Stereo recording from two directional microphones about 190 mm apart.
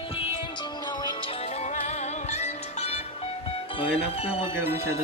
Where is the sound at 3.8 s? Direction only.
30° left (ahead or behind).